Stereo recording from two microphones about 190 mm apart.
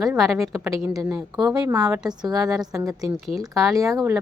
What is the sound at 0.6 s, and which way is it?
A woman's voice, 15° right (ahead or behind).